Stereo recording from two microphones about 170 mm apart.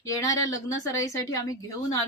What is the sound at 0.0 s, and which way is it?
A woman's voice, 20° left (ahead or behind).